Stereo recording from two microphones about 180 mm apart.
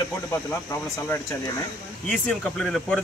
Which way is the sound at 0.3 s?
15° left (ahead or behind).